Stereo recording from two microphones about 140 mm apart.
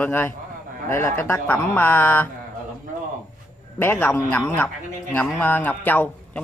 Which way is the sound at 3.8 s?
15° left (ahead or behind).